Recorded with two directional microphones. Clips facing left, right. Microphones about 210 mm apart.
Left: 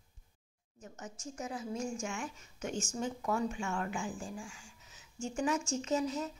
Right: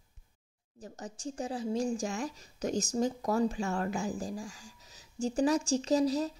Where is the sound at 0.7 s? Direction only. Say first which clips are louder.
Right 4 dB; 35° right (ahead or behind).